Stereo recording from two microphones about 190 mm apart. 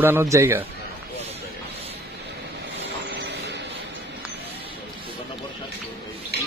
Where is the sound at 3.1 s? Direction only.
65° right (ahead or behind).